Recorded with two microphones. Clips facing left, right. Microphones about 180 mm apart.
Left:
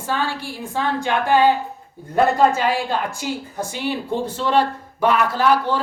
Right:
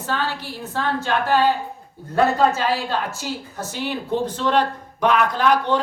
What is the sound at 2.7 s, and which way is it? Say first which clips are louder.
A woman's voice: left 2 dB; 15° left (ahead or behind).